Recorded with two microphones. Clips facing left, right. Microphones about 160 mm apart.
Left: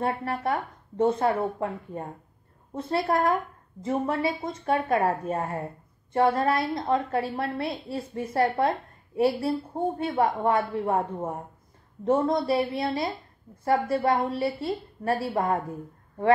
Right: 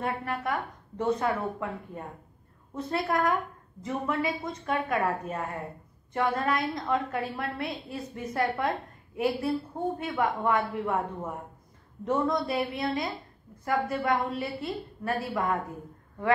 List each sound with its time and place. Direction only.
0.0 s a woman's voice: 30° left (ahead or behind)